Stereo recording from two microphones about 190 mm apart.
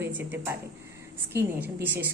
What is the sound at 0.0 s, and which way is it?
A woman's voice, 10° right (ahead or behind).